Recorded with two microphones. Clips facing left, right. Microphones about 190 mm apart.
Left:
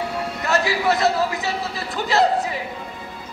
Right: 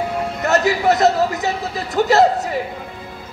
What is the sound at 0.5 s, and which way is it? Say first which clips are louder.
Speech: right 4 dB; 45° right (ahead or behind).